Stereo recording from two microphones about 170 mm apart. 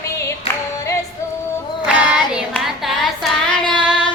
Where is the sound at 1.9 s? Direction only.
5° right (ahead or behind).